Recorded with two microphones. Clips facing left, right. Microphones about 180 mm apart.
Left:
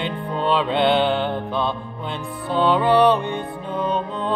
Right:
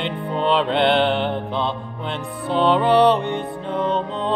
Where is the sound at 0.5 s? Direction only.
5° left (ahead or behind).